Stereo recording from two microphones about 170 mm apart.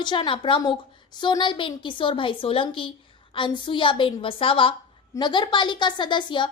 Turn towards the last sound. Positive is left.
turn(degrees=25)  # may be behind; listen again after turning